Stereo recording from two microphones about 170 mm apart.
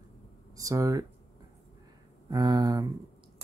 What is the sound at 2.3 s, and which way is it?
Speech, 25° right (ahead or behind).